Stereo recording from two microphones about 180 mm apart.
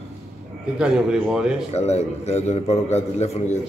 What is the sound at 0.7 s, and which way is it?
Speech, 5° right (ahead or behind).